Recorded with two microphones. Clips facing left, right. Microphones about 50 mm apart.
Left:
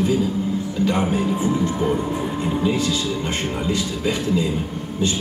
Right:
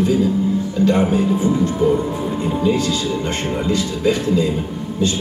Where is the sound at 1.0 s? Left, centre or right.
Centre.